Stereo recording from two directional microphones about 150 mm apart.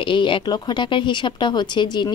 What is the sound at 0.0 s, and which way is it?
Speech, 35° left (ahead or behind).